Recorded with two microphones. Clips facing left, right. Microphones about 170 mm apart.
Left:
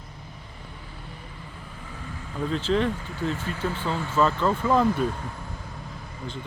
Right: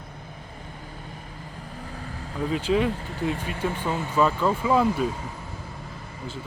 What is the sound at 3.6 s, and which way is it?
Speech, 10° right (ahead or behind).